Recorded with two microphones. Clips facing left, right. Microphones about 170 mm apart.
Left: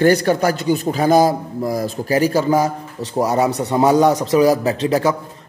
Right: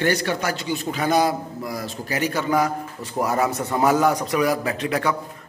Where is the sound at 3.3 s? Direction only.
20° left (ahead or behind).